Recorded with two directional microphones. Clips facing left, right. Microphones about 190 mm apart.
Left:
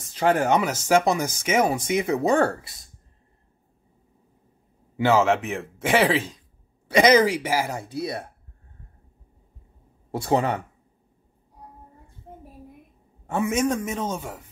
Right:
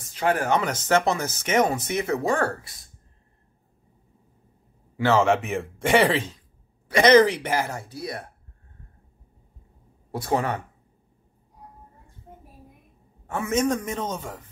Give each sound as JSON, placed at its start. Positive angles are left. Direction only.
{"t": 0.1, "sound": "speech", "side_deg": 25}
{"t": 0.6, "sound": "speech", "side_deg": 10}
{"t": 4.9, "sound": "a man's voice", "side_deg": 15}
{"t": 5.2, "sound": "speech", "side_deg": 0}
{"t": 7.9, "sound": "speech", "side_deg": 25}
{"t": 10.1, "sound": "speech", "side_deg": 25}
{"t": 13.3, "sound": "speech", "side_deg": 15}